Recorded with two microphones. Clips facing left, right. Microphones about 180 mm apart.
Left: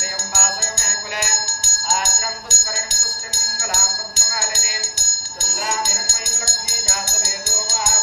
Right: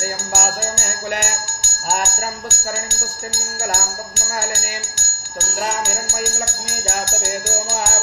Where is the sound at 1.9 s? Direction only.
55° right (ahead or behind).